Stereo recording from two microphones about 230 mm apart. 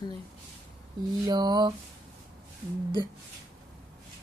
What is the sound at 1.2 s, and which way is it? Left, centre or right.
Speech, centre.